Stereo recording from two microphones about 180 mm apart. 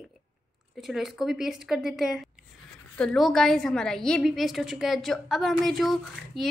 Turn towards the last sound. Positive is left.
turn(degrees=0)  # may be behind; listen again after turning